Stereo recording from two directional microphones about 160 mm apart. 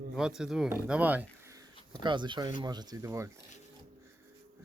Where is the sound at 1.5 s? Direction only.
25° right (ahead or behind).